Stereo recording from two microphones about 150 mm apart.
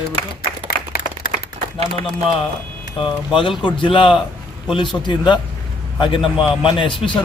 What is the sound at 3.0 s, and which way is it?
Speech, 35° left (ahead or behind).